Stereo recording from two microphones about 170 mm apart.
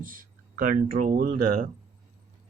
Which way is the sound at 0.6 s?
50° right (ahead or behind).